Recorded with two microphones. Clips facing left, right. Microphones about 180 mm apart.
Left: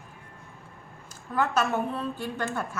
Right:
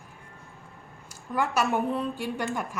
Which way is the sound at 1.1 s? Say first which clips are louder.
Left 1 dB; 10° right (ahead or behind).